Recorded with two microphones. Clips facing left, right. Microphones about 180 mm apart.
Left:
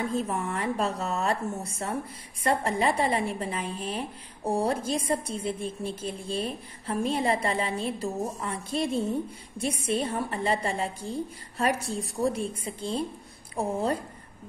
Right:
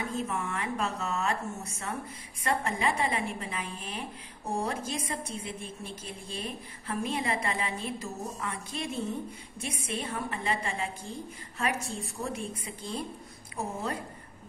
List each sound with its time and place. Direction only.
0.1 s a woman's voice: 35° left (ahead or behind)